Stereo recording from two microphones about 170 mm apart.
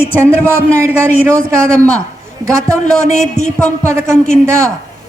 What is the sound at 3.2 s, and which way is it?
Speech, 5° left (ahead or behind).